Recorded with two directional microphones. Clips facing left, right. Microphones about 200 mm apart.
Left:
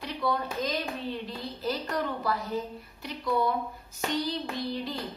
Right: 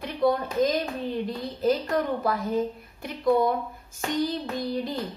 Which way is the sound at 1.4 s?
50° right (ahead or behind).